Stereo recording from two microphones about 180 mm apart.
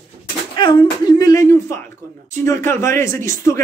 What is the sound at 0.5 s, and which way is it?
Speech, 25° left (ahead or behind).